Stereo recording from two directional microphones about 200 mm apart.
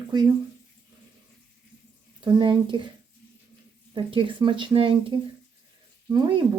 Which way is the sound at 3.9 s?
25° right (ahead or behind).